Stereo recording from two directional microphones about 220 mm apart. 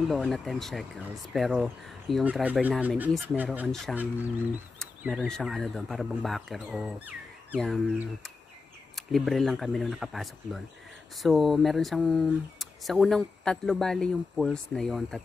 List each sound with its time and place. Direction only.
0.1 s speech: centre (ahead or behind)